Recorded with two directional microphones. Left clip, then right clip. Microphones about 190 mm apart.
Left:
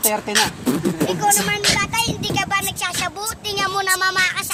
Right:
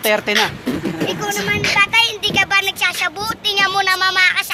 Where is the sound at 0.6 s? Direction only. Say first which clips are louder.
Even; 55° left (ahead or behind).